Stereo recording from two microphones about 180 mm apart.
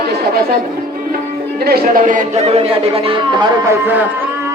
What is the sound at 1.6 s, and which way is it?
Speech, 60° right (ahead or behind).